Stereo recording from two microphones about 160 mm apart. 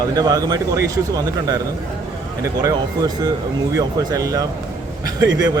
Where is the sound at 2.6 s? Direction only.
25° right (ahead or behind).